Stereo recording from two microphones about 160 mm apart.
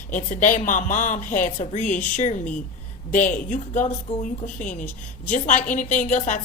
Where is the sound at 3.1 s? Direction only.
55° left (ahead or behind).